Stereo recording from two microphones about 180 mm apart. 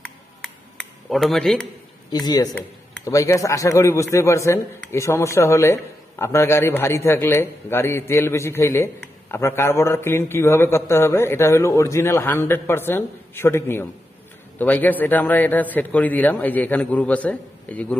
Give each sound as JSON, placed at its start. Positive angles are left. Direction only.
{"t": 1.1, "sound": "a man's voice", "side_deg": 0}
{"t": 2.0, "sound": "a man's voice", "side_deg": 20}